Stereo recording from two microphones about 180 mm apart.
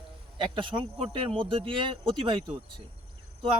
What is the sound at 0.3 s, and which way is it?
Speech, 30° right (ahead or behind).